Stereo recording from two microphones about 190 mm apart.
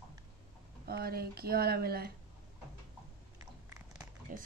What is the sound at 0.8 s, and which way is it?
Speech, 55° right (ahead or behind).